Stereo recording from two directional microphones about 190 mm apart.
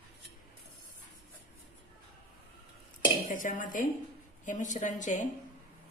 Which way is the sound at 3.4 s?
45° left (ahead or behind).